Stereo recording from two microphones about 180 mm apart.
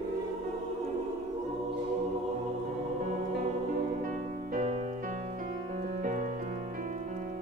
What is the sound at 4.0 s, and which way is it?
Music, 45° right (ahead or behind).